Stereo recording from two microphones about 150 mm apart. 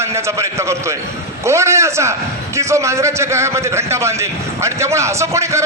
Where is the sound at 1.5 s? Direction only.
20° right (ahead or behind).